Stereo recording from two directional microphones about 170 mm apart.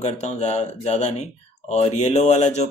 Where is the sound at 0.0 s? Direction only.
40° left (ahead or behind).